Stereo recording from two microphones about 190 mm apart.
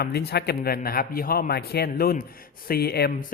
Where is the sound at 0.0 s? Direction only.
55° left (ahead or behind).